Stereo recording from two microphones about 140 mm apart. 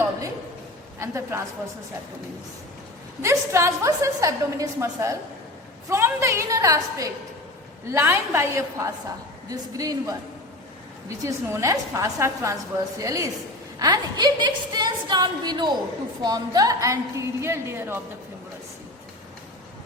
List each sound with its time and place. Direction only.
0.9 s a woman's voice: 20° right (ahead or behind)
3.2 s a woman's voice: 20° right (ahead or behind)